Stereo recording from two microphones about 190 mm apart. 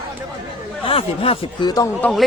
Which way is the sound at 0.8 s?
30° left (ahead or behind).